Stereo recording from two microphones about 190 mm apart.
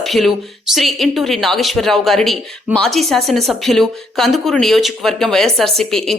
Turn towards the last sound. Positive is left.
turn(degrees=0)  # may be behind; listen again after turning